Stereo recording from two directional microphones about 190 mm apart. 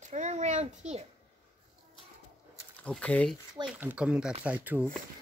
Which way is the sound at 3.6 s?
5° right (ahead or behind).